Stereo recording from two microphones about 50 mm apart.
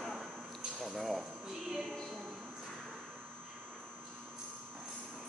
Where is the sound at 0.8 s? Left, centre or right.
Centre.